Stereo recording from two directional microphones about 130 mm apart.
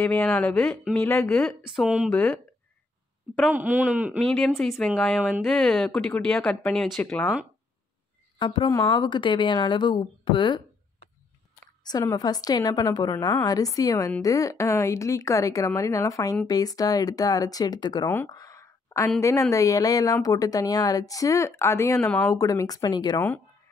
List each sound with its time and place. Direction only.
0.0 s speech: 15° left (ahead or behind)
1.6 s speech: 5° right (ahead or behind)
2.1 s speech: 10° left (ahead or behind)
3.5 s speech: 10° right (ahead or behind)
4.2 s speech: 5° left (ahead or behind)
8.4 s a woman's voice: 35° left (ahead or behind)
8.9 s a woman's voice: 35° left (ahead or behind)
11.8 s a woman's voice: 30° left (ahead or behind)
18.0 s speech: 15° left (ahead or behind)
18.3 s a sound: 25° left (ahead or behind)
19.5 s a woman's voice: 25° left (ahead or behind)